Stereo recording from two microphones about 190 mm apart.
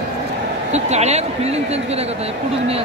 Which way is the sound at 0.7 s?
35° right (ahead or behind).